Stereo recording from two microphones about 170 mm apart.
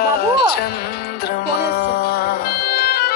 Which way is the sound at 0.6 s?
65° left (ahead or behind).